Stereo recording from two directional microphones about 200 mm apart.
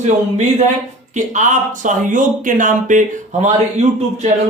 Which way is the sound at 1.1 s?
35° right (ahead or behind).